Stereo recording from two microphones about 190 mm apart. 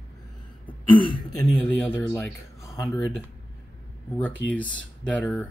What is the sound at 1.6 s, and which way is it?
Speech, 10° left (ahead or behind).